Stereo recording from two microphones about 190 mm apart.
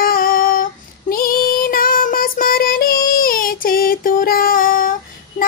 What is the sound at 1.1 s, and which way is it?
Child singing, 50° left (ahead or behind).